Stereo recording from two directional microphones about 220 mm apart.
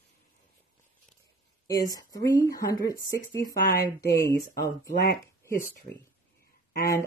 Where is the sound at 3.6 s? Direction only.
45° left (ahead or behind).